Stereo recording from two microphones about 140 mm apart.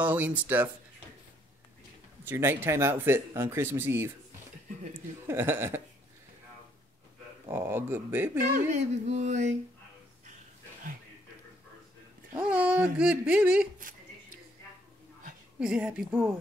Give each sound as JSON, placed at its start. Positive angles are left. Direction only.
{"t": 0.0, "sound": "speech", "side_deg": -10}
{"t": 2.2, "sound": "speech", "side_deg": -15}
{"t": 5.2, "sound": "speech", "side_deg": -15}
{"t": 7.4, "sound": "speech", "side_deg": -15}
{"t": 8.4, "sound": "a sound", "side_deg": -60}
{"t": 12.4, "sound": "speech", "side_deg": -10}
{"t": 13.7, "sound": "a sound", "side_deg": -75}
{"t": 15.6, "sound": "speech", "side_deg": -5}